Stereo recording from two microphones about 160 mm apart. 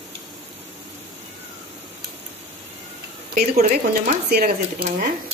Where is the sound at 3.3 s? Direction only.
60° right (ahead or behind).